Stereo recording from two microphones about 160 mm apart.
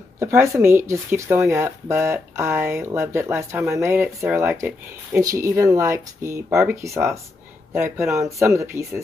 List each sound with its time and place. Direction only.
0.2 s speech: 15° right (ahead or behind)